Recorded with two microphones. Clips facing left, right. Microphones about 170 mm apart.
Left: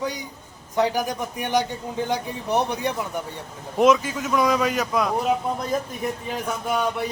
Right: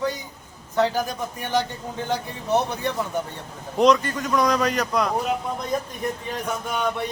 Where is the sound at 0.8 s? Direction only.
15° left (ahead or behind).